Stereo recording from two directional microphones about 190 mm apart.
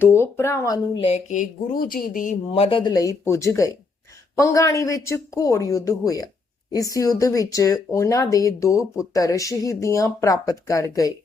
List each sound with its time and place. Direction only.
0.0 s speech: 10° left (ahead or behind)
1.0 s speech: 35° left (ahead or behind)
2.5 s speech: 30° left (ahead or behind)